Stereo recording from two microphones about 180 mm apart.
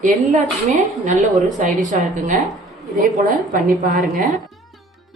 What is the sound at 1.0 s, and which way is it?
A woman's voice, 45° right (ahead or behind).